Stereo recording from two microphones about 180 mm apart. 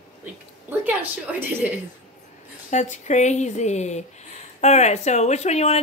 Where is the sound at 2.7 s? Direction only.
40° left (ahead or behind).